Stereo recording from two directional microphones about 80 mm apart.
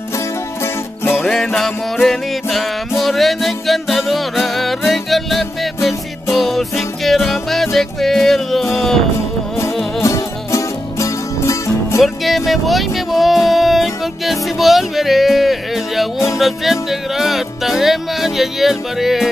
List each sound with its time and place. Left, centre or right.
1.1 s music: centre
10.0 s music: left
12.0 s music: centre